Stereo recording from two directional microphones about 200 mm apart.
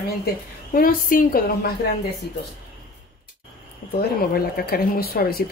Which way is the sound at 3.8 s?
45° left (ahead or behind).